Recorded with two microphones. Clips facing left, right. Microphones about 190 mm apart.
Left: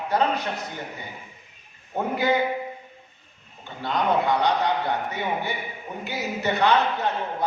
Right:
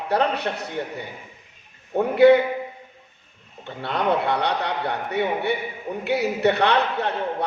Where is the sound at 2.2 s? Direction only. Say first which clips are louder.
Right 11 dB; 65° right (ahead or behind).